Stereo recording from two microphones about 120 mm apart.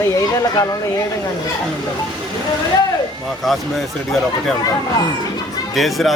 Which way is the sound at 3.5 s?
Centre (ahead or behind).